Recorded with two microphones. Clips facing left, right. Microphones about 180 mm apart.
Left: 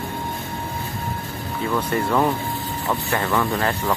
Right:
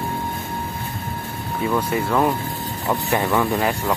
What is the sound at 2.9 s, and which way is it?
Speech, 15° right (ahead or behind).